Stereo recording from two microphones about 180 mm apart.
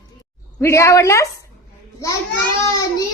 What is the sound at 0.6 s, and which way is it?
Speech, 15° left (ahead or behind).